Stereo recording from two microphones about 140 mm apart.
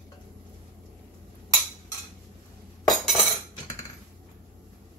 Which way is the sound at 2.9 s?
Centre (ahead or behind).